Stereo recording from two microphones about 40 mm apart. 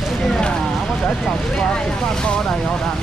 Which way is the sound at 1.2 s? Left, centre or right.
Centre.